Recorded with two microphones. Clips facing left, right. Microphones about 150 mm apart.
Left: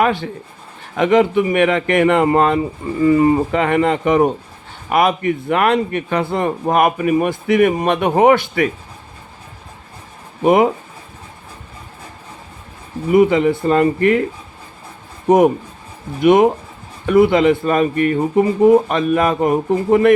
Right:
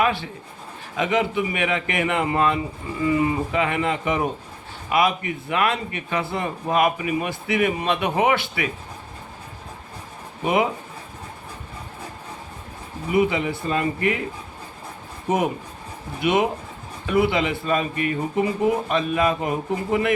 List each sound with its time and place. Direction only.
0.0 s a man's voice: 50° left (ahead or behind)
10.4 s a man's voice: 50° left (ahead or behind)
13.1 s a man's voice: 50° left (ahead or behind)
16.2 s a man's voice: 50° left (ahead or behind)